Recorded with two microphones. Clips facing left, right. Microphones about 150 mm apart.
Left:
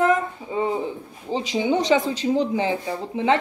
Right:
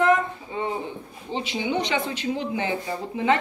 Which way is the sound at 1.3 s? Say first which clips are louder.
Left 5 dB; 40° left (ahead or behind).